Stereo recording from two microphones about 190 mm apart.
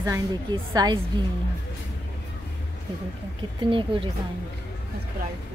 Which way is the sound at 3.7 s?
25° right (ahead or behind).